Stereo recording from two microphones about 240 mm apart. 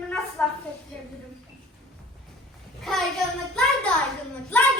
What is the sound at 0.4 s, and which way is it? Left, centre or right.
Speech, centre.